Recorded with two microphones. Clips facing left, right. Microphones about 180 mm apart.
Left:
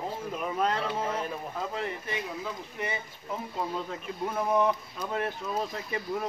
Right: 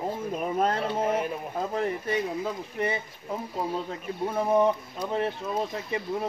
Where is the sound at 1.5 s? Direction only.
40° right (ahead or behind).